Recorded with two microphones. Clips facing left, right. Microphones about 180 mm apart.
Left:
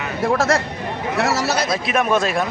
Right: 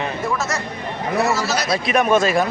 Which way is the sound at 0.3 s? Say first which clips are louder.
Left 6 dB; 65° left (ahead or behind).